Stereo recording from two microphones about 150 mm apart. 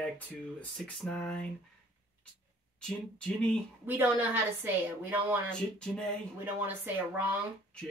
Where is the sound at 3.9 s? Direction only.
10° right (ahead or behind).